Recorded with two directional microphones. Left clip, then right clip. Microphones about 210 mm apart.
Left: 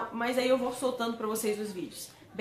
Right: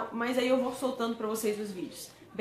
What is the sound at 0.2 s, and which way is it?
A woman's voice, 5° left (ahead or behind).